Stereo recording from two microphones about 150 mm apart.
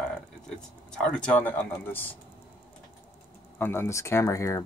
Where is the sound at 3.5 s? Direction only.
15° left (ahead or behind).